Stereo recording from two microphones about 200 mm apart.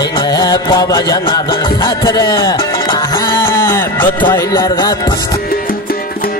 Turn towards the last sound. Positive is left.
turn(degrees=20)  # may be behind; listen again after turning